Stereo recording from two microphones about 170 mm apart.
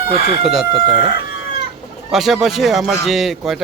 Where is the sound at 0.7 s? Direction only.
35° right (ahead or behind).